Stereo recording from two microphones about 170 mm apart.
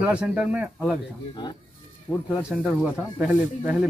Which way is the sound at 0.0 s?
10° right (ahead or behind).